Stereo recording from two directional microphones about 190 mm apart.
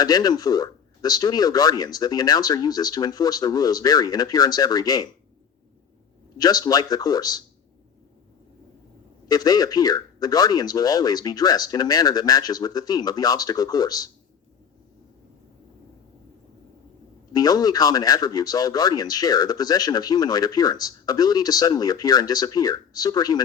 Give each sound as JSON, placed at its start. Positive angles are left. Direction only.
{"t": 0.0, "sound": "speech", "side_deg": 20}
{"t": 6.3, "sound": "speech", "side_deg": 20}
{"t": 9.3, "sound": "speech", "side_deg": 20}
{"t": 17.3, "sound": "speech", "side_deg": 20}